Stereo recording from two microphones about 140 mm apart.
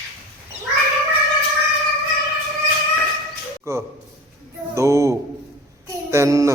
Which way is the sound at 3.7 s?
20° right (ahead or behind).